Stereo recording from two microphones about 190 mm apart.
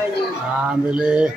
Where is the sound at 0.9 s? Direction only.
5° right (ahead or behind).